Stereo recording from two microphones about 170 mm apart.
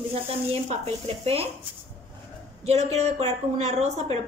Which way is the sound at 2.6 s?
40° right (ahead or behind).